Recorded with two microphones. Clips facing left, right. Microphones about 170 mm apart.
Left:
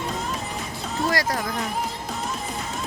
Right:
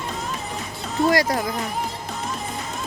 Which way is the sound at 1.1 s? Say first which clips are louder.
Right 5 dB; 20° right (ahead or behind).